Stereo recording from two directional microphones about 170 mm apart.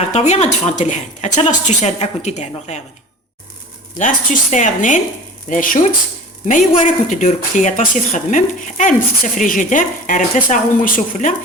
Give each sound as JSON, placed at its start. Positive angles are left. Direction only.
{"t": 0.0, "sound": "speech", "side_deg": 40}
{"t": 3.9, "sound": "speech", "side_deg": 50}